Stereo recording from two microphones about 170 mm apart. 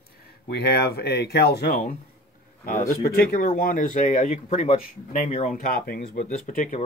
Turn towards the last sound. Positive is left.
turn(degrees=45)  # may be behind; listen again after turning